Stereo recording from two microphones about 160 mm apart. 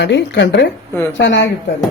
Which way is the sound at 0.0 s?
90° left.